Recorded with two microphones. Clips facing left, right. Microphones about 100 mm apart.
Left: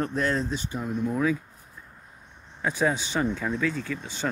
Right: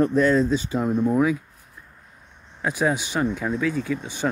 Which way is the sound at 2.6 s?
10° right (ahead or behind).